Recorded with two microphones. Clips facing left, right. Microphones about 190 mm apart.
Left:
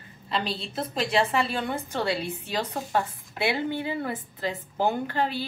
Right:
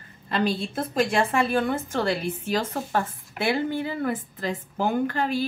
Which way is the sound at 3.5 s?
45° right (ahead or behind).